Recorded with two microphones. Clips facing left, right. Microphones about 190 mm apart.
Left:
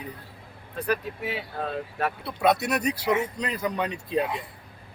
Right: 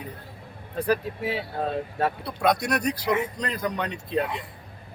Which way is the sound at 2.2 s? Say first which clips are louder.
Left 3 dB; 5° left (ahead or behind).